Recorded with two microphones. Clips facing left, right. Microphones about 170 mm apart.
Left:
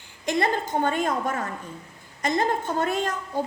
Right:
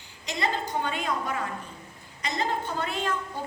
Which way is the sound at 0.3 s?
50° left (ahead or behind).